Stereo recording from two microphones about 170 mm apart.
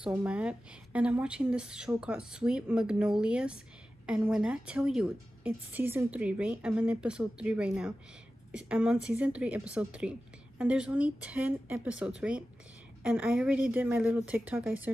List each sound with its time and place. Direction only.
0.0 s a woman's voice: 5° right (ahead or behind)